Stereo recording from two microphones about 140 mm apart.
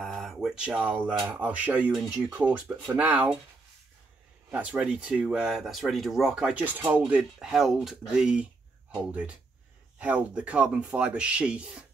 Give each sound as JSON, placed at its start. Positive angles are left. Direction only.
{"t": 0.0, "sound": "a sound", "side_deg": 5}
{"t": 1.3, "sound": "speech", "side_deg": -10}
{"t": 4.5, "sound": "speech", "side_deg": -10}